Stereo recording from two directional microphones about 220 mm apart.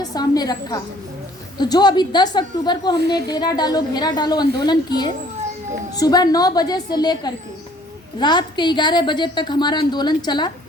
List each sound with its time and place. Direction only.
0.0 s a woman's voice: 15° left (ahead or behind)